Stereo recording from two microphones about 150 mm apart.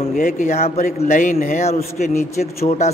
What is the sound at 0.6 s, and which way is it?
A man's voice, 45° left (ahead or behind).